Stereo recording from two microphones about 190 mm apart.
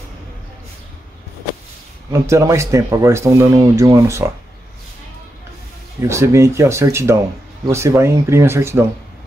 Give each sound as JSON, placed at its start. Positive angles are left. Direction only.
{"t": 2.2, "sound": "speech", "side_deg": -15}
{"t": 6.0, "sound": "speech", "side_deg": -15}